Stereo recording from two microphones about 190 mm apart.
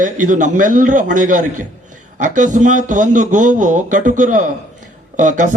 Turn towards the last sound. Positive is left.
turn(degrees=-40)  # may be behind; listen again after turning